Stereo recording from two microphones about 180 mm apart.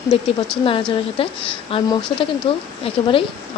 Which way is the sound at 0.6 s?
30° left (ahead or behind).